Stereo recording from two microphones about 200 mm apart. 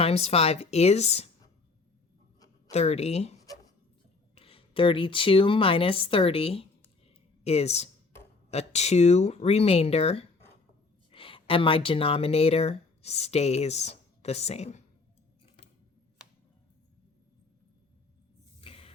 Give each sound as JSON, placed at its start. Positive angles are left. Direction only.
{"t": 0.0, "sound": "speech", "side_deg": 30}
{"t": 2.6, "sound": "speech", "side_deg": 30}
{"t": 4.4, "sound": "speech", "side_deg": 25}
{"t": 18.6, "sound": "a sound", "side_deg": 25}